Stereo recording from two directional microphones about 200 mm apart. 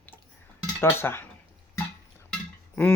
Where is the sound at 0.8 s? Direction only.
10° left (ahead or behind).